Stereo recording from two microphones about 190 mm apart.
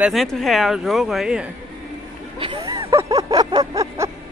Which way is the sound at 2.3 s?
25° right (ahead or behind).